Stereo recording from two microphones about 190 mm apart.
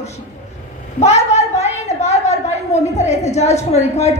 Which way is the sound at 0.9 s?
35° left (ahead or behind).